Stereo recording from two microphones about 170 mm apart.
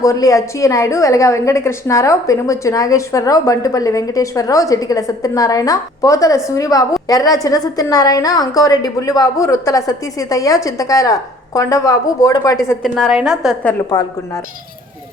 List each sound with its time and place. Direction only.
0.0 s a woman's voice: 20° left (ahead or behind)
12.8 s a woman's voice: centre (ahead or behind)
13.9 s a woman's voice: 25° left (ahead or behind)